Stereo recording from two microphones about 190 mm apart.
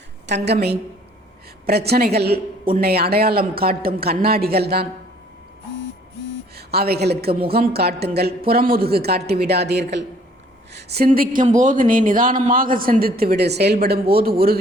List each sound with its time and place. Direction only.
0.3 s a woman's voice: 65° right (ahead or behind)
6.6 s a woman's voice: 55° right (ahead or behind)